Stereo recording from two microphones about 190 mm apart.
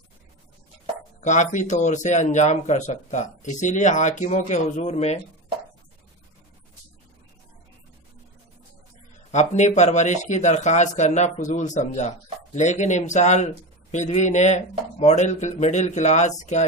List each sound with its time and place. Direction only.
1.2 s speech: 40° left (ahead or behind)
9.3 s speech: 40° left (ahead or behind)